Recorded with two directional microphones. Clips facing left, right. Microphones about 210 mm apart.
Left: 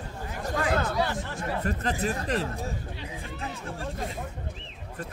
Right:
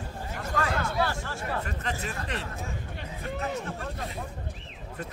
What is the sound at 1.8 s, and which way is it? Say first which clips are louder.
Speech: left 5 dB; 40° left (ahead or behind).